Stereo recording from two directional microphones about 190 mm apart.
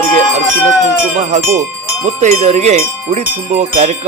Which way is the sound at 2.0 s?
35° right (ahead or behind).